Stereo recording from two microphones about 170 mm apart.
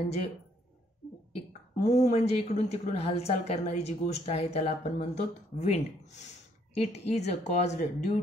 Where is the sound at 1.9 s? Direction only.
40° left (ahead or behind).